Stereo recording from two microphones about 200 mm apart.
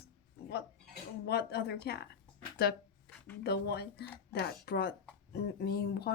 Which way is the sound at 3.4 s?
55° left (ahead or behind).